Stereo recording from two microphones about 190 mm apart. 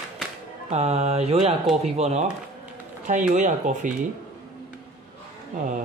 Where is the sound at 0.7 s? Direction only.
35° right (ahead or behind).